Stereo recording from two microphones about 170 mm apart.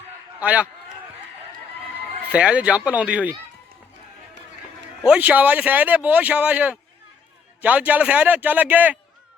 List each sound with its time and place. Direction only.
0.3 s a man's voice: 10° right (ahead or behind)
2.3 s speech: 5° right (ahead or behind)
5.0 s speech: 10° right (ahead or behind)